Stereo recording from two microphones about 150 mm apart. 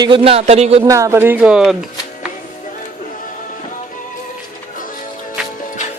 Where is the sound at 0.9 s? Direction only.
20° right (ahead or behind); by 1.9 s 5° right (ahead or behind).